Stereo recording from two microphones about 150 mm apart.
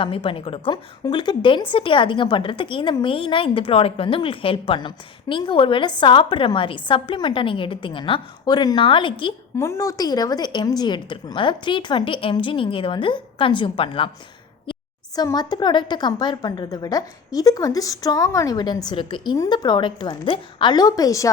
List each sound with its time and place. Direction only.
0.0 s a woman's voice: 35° left (ahead or behind)
9.6 s a woman's voice: 20° left (ahead or behind)